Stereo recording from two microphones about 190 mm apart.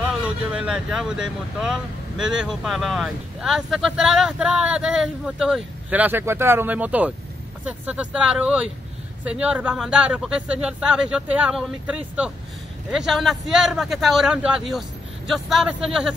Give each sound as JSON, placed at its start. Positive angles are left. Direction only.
{"t": 0.0, "sound": "speech", "side_deg": -5}